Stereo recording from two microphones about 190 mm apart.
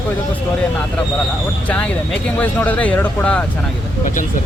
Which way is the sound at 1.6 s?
5° left (ahead or behind).